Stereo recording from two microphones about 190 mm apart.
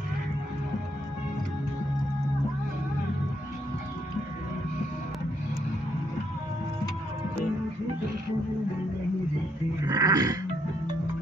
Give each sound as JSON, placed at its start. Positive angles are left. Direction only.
{"t": 9.8, "sound": "dog", "side_deg": -20}